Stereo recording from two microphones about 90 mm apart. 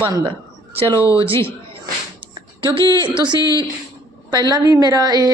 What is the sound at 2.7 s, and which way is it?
A woman's voice, 60° right (ahead or behind).